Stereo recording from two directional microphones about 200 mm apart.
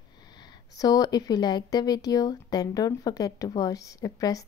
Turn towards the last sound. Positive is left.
turn(degrees=15)  # may be behind; listen again after turning